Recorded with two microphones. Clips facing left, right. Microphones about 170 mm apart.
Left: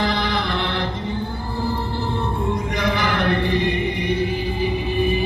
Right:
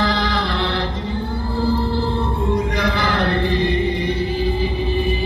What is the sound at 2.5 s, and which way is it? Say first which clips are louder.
Music: right 4 dB; 20° left (ahead or behind).